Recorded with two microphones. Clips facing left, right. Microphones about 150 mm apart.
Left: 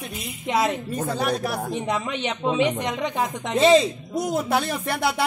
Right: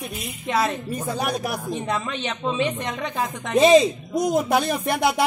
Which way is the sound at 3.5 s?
15° right (ahead or behind).